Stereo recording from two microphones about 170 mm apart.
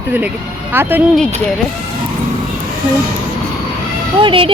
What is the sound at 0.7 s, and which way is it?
Speech, 10° right (ahead or behind).